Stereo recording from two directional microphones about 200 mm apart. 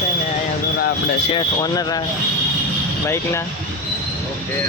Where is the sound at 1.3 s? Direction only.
20° left (ahead or behind).